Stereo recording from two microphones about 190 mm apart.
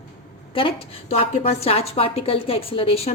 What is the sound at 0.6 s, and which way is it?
A woman's voice, 30° left (ahead or behind).